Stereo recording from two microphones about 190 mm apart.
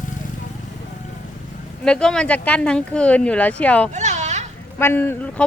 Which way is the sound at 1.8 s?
5° left (ahead or behind).